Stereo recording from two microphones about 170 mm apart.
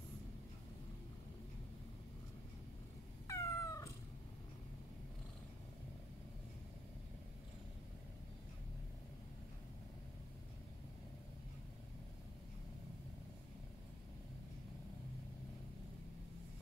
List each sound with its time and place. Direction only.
3.3 s cat: 20° left (ahead or behind)